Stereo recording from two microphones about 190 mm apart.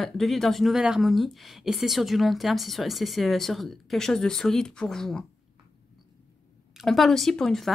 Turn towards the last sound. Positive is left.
turn(degrees=0)  # may be behind; listen again after turning